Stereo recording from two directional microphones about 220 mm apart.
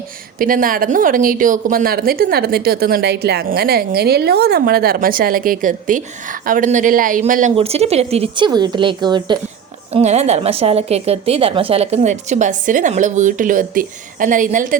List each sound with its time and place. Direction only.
0.3 s speech: 40° right (ahead or behind)